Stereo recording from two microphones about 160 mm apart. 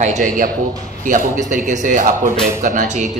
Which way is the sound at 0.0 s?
50° right (ahead or behind).